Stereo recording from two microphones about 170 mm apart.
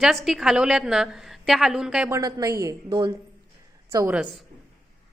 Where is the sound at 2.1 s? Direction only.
20° right (ahead or behind).